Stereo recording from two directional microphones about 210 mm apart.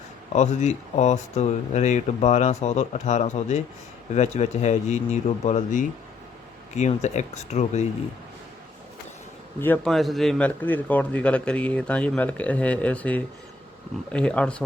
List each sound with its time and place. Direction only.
0.3 s speech: 35° left (ahead or behind)
9.6 s a man's voice: 10° left (ahead or behind)